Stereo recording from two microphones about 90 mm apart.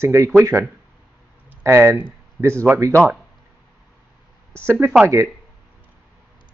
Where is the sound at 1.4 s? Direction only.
30° right (ahead or behind).